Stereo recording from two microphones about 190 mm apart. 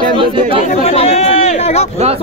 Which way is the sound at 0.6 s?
35° left (ahead or behind).